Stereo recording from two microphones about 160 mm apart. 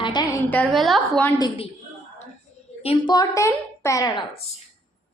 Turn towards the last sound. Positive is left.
turn(degrees=20)  # may be behind; listen again after turning